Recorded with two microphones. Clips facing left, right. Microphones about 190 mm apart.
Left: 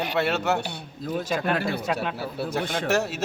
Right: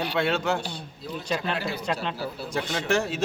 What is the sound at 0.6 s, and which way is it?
A man's voice, 55° left (ahead or behind).